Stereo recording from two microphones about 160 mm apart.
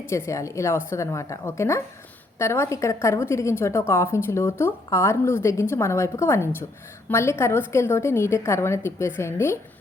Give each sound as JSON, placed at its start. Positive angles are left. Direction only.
{"t": 0.0, "sound": "a woman's voice", "side_deg": 15}